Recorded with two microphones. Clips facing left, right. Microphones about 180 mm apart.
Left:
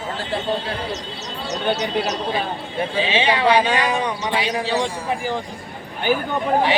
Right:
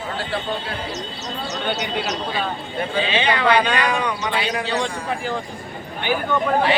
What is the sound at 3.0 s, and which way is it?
Speech, 25° left (ahead or behind).